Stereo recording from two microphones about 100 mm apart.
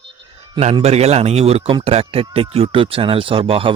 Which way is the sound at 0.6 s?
90° right.